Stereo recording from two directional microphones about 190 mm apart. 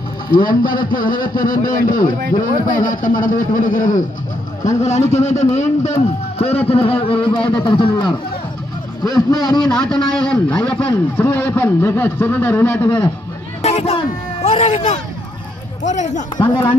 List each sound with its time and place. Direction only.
0.3 s a man's voice: 50° left (ahead or behind); by 9.7 s 20° left (ahead or behind)
9.7 s a man's voice: 5° left (ahead or behind)
13.6 s hubbub: 35° left (ahead or behind)
15.8 s a man's voice: 40° left (ahead or behind)
16.3 s speech: 25° left (ahead or behind)